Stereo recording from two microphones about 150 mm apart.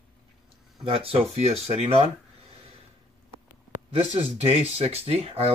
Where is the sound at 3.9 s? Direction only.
40° right (ahead or behind).